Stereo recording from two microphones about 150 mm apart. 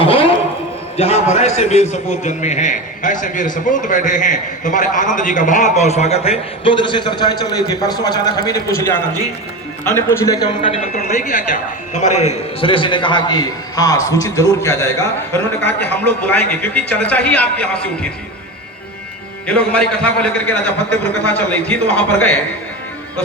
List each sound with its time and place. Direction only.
0.0 s a sound: 35° left (ahead or behind)
0.9 s a man's voice: 45° left (ahead or behind); by 9.0 s 20° left (ahead or behind)
10.1 s a man's voice: 25° left (ahead or behind)
10.9 s a man's voice: 60° left (ahead or behind); by 17.7 s 10° left (ahead or behind)
19.5 s a man's voice: 10° left (ahead or behind)